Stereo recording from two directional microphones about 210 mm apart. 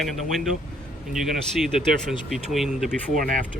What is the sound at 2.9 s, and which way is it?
Speech, 40° right (ahead or behind).